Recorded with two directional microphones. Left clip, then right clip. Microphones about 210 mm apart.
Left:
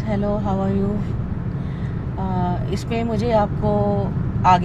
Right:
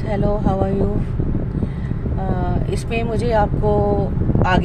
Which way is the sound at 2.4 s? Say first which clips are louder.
Right 1 dB; 5° right (ahead or behind).